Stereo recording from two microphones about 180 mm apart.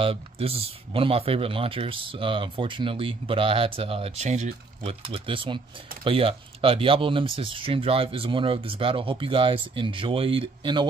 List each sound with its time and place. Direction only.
0.0 s speech: 30° right (ahead or behind)